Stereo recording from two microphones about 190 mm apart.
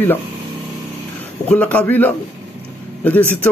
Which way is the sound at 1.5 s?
10° left (ahead or behind).